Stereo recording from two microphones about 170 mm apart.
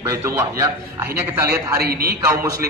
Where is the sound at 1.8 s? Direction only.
65° right (ahead or behind).